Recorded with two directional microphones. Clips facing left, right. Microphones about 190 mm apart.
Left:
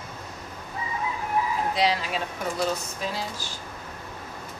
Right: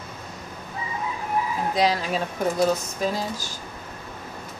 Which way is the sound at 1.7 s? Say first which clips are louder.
Right 5 dB; 45° right (ahead or behind).